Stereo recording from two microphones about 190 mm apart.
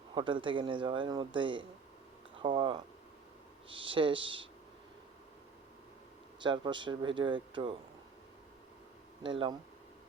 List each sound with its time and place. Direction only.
0.1 s a man's voice: 25° right (ahead or behind)
6.4 s a man's voice: 25° right (ahead or behind)
9.2 s a man's voice: 25° right (ahead or behind)